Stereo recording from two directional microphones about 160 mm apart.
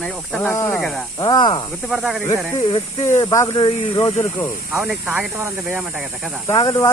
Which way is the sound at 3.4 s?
30° left (ahead or behind).